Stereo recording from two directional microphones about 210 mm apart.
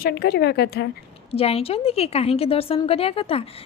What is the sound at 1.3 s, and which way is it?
A woman's voice, 30° left (ahead or behind).